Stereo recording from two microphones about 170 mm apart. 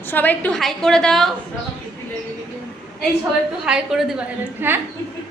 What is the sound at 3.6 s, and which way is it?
A woman's voice, 5° right (ahead or behind).